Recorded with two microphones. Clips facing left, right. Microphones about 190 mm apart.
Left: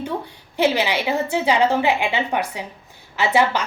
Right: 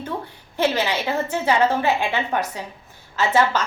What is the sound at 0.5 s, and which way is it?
A woman's voice, 15° left (ahead or behind).